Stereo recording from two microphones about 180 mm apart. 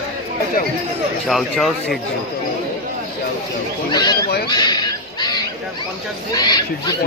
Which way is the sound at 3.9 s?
20° left (ahead or behind).